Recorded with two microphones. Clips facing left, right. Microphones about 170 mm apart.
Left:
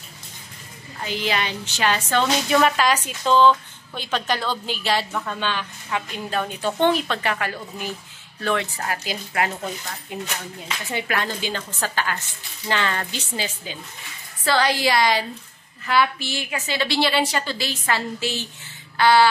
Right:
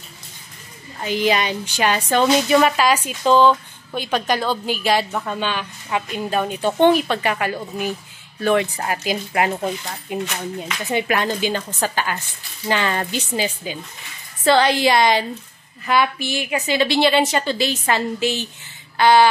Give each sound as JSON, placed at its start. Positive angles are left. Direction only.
{"t": 1.0, "sound": "a woman's voice", "side_deg": -15}